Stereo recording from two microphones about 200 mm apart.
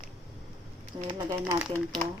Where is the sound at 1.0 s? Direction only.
20° right (ahead or behind).